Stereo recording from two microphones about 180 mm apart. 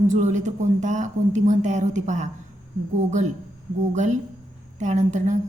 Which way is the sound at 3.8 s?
40° right (ahead or behind).